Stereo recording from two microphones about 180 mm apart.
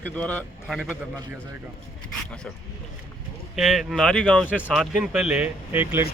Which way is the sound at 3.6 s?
Centre (ahead or behind).